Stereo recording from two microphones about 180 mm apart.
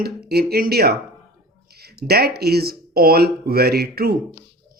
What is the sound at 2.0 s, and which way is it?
Speech, 60° right (ahead or behind).